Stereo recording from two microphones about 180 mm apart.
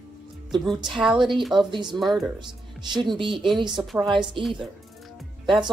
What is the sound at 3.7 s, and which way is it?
Speech, centre (ahead or behind).